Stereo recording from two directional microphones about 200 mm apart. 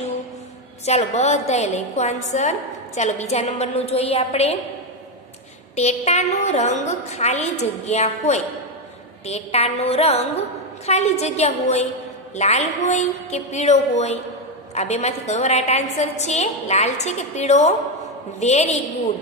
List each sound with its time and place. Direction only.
0.8 s a woman's voice: 35° left (ahead or behind)
5.8 s a woman's voice: 35° left (ahead or behind)